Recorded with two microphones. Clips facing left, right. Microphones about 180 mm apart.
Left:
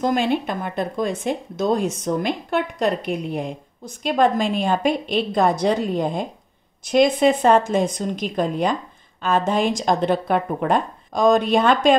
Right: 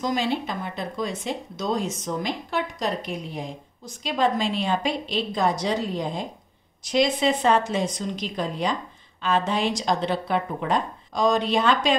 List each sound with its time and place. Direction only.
0.0 s speech: 55° left (ahead or behind)